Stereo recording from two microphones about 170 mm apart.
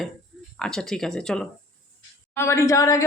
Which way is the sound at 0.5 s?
5° left (ahead or behind).